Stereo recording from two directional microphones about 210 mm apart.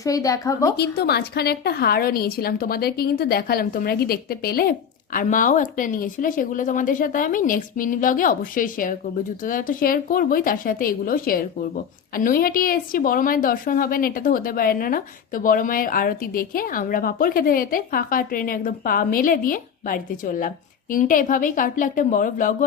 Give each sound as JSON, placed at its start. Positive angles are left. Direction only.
{"t": 0.0, "sound": "speech", "side_deg": 15}
{"t": 0.8, "sound": "a woman's voice", "side_deg": 50}